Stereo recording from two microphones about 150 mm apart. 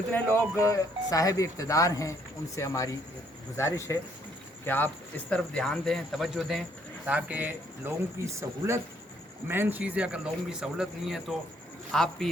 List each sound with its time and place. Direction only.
0.1 s a man's voice: 15° left (ahead or behind)